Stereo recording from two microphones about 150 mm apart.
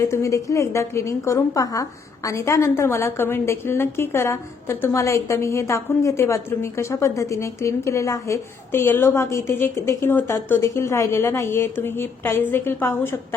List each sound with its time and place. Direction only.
0.0 s a woman's voice: 20° left (ahead or behind)